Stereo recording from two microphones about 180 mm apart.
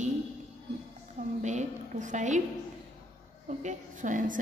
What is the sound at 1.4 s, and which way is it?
Speech, 40° right (ahead or behind).